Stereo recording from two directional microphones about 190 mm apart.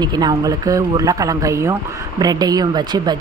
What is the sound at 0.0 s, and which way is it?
Speech, 20° right (ahead or behind).